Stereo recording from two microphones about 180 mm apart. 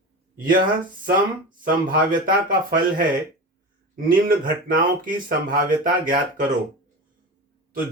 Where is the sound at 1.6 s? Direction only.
50° right (ahead or behind).